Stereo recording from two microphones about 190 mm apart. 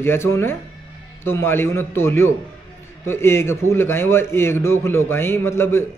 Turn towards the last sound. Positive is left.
turn(degrees=15)  # may be behind; listen again after turning